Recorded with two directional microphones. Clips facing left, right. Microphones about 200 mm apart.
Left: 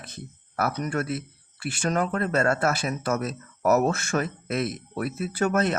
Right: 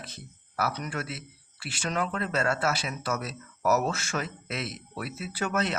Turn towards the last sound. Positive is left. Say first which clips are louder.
# left 6 dB
turn(degrees=50)  # may be behind; listen again after turning